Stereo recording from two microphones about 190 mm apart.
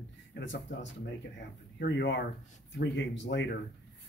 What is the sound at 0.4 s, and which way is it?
Speech, 75° left (ahead or behind).